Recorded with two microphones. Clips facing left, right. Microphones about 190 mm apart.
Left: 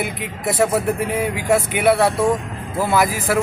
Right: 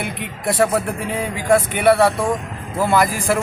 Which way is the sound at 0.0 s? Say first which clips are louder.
Left 1 dB; 5° left (ahead or behind).